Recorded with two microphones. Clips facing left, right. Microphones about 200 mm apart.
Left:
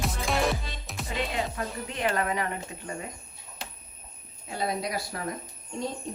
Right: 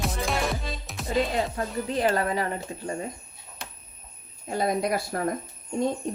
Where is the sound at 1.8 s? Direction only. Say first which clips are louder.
Right 4 dB; 35° right (ahead or behind).